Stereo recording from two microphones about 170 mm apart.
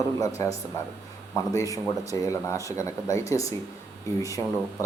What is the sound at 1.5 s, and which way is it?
Speech, 20° left (ahead or behind).